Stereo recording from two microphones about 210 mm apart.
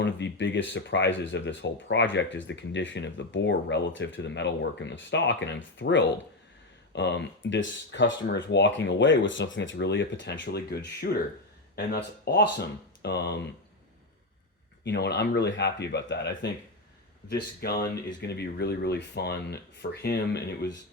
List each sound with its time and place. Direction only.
0.0 s speech: 60° left (ahead or behind)
14.8 s speech: 55° left (ahead or behind)